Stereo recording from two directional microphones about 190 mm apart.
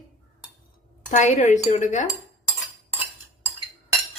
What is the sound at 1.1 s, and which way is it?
Cutlery, 40° left (ahead or behind).